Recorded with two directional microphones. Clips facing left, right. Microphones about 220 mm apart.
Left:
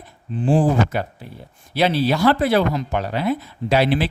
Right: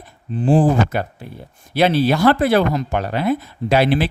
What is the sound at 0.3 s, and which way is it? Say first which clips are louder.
Speech: right 3 dB; 40° right (ahead or behind).